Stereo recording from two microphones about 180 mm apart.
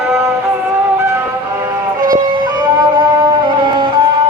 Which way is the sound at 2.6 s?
25° right (ahead or behind).